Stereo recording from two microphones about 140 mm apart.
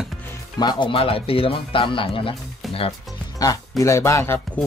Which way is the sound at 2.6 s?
Centre (ahead or behind).